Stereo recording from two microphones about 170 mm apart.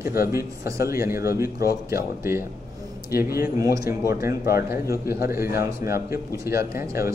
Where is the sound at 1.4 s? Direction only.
60° left (ahead or behind).